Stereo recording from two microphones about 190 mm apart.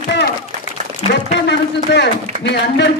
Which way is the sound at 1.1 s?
65° left (ahead or behind).